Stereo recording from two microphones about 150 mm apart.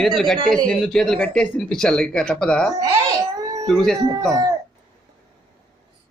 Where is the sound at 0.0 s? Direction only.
Centre (ahead or behind).